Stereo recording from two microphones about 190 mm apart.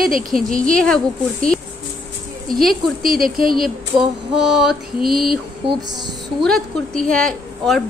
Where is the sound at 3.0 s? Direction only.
50° right (ahead or behind).